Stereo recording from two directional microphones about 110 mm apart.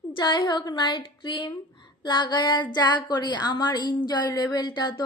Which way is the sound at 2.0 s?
45° left (ahead or behind).